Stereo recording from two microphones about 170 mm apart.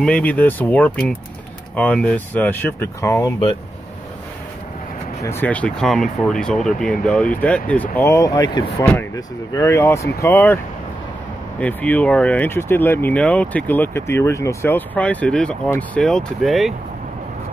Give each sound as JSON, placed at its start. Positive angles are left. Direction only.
{"t": 0.0, "sound": "speech", "side_deg": 10}
{"t": 5.2, "sound": "speech", "side_deg": 10}
{"t": 11.6, "sound": "speech", "side_deg": 10}